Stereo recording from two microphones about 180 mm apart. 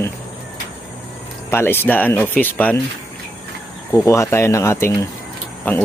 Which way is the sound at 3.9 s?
15° left (ahead or behind).